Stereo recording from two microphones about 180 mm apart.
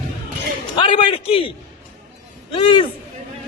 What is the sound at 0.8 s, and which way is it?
A man's voice, 25° left (ahead or behind).